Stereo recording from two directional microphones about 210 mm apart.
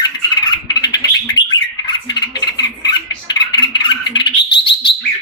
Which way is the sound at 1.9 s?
20° left (ahead or behind).